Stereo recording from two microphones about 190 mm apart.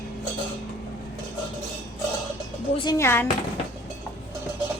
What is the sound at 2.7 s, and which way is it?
Speech, 20° left (ahead or behind).